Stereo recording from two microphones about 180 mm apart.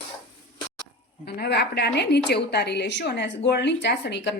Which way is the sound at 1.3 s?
65° left (ahead or behind).